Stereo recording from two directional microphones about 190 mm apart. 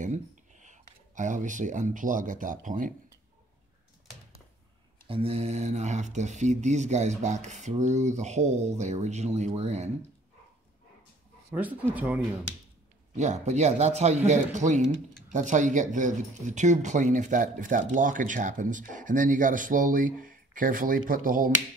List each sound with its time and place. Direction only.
0.0 s speech: 40° right (ahead or behind)
5.0 s speech: 30° right (ahead or behind)
11.9 s speech: 10° right (ahead or behind)
13.1 s speech: 40° right (ahead or behind)